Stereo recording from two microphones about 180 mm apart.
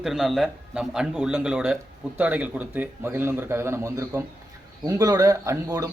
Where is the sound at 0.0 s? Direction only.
Centre (ahead or behind).